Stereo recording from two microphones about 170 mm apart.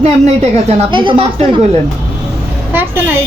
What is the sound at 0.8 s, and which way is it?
Speech, 30° right (ahead or behind).